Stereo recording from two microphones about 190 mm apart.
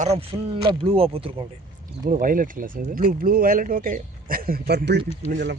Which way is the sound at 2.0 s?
45° right (ahead or behind).